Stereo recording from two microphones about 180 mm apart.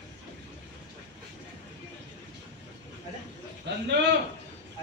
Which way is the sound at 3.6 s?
70° right (ahead or behind).